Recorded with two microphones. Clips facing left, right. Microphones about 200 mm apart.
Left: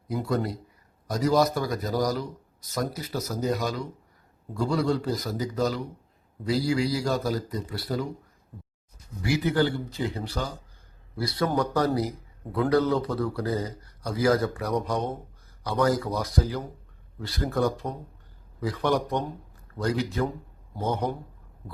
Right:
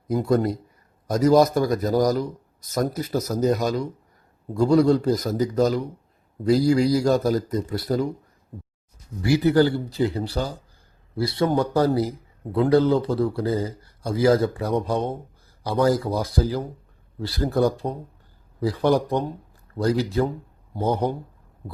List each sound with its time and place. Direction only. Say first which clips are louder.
0.1 s speech: right 7 dB; 45° right (ahead or behind)
9.2 s speech: right 6 dB; 35° right (ahead or behind)